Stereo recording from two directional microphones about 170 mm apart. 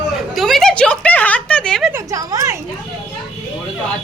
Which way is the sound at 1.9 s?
20° right (ahead or behind).